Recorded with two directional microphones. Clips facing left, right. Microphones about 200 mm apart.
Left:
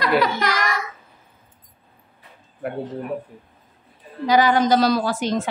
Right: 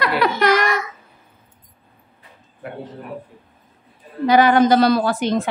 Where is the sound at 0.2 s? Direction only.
60° right (ahead or behind).